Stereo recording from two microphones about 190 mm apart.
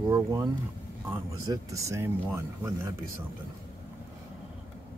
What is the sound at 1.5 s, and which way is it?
Speech, 15° right (ahead or behind).